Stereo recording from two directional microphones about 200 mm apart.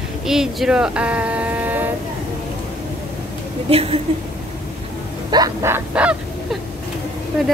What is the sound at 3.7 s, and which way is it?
Speech, 30° right (ahead or behind).